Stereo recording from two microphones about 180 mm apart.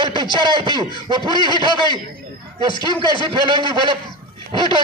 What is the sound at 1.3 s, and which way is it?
Speech, 25° left (ahead or behind).